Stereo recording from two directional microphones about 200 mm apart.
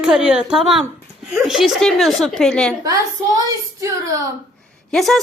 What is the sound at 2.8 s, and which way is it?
Speech, 20° right (ahead or behind).